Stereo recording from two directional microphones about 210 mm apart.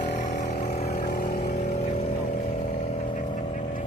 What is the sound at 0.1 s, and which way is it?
Vehicle, 35° left (ahead or behind).